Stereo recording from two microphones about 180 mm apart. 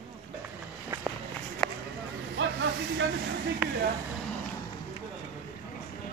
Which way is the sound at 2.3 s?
85° right.